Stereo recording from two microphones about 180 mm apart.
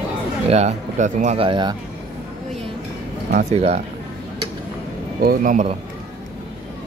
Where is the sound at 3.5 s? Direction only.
35° right (ahead or behind).